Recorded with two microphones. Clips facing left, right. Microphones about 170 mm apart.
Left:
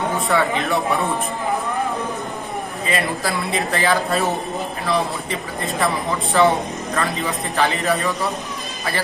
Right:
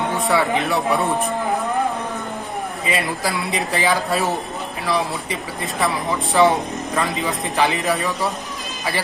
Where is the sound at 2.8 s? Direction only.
10° right (ahead or behind).